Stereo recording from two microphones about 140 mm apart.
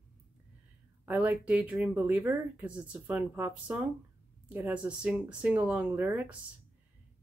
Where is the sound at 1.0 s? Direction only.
10° right (ahead or behind).